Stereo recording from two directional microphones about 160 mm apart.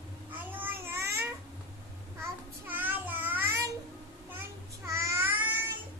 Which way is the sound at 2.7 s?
10° right (ahead or behind).